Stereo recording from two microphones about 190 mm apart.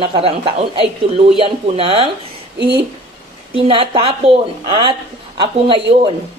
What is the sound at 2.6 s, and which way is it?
Speech, 60° right (ahead or behind).